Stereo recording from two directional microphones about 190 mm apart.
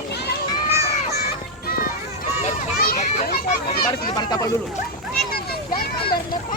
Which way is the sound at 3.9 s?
25° left (ahead or behind).